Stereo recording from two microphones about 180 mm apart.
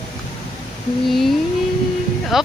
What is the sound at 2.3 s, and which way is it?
Music, centre (ahead or behind).